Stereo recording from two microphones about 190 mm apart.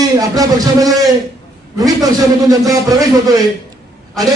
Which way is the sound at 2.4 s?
20° right (ahead or behind).